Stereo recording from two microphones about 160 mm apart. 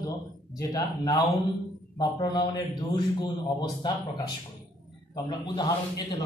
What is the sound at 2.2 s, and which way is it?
A man's voice, 25° left (ahead or behind).